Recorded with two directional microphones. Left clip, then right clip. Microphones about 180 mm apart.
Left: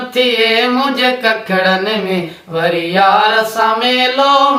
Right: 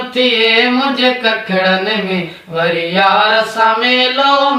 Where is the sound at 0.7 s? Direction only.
25° left (ahead or behind).